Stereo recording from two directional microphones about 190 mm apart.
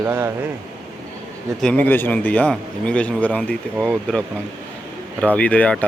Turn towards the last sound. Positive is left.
turn(degrees=5)  # may be behind; listen again after turning